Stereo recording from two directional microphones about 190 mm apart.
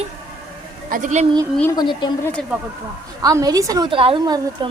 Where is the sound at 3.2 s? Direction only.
20° right (ahead or behind).